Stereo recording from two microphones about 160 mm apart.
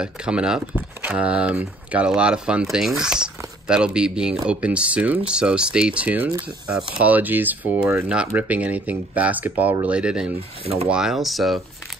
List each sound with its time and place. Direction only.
0.0 s speech: 5° right (ahead or behind)